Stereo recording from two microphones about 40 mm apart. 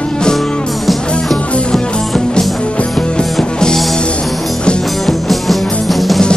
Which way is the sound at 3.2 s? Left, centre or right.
Centre.